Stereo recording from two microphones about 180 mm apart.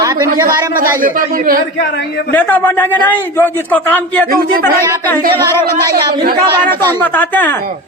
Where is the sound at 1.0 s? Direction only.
50° right (ahead or behind).